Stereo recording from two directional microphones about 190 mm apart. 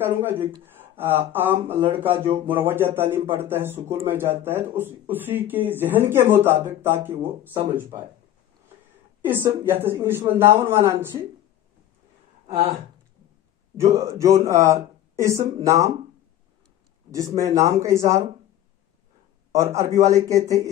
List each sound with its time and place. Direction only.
0.0 s speech: 10° right (ahead or behind)
9.2 s speech: 10° right (ahead or behind)
13.7 s speech: 15° right (ahead or behind)
17.1 s speech: 15° right (ahead or behind)
19.5 s speech: 15° right (ahead or behind)